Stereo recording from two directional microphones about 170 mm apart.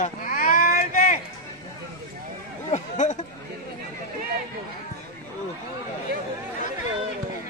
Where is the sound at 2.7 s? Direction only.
45° left (ahead or behind).